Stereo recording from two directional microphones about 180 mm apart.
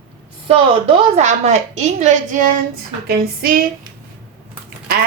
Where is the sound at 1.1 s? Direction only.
40° right (ahead or behind).